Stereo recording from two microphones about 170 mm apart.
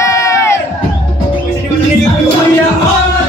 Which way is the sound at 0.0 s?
15° left (ahead or behind).